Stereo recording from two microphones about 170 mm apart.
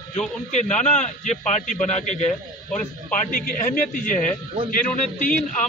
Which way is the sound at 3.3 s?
50° left (ahead or behind).